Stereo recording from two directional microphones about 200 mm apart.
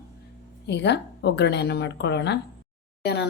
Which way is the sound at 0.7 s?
60° left (ahead or behind).